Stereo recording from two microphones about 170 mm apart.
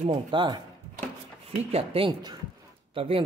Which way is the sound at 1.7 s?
35° right (ahead or behind).